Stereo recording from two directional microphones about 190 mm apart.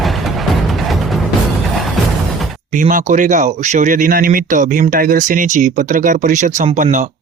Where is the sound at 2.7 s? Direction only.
45° right (ahead or behind).